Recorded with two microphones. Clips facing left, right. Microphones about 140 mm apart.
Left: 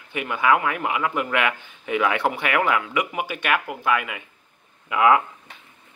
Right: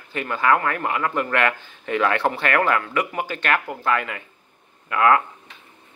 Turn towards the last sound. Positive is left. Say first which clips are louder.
# even
turn(degrees=15)  # may be behind; listen again after turning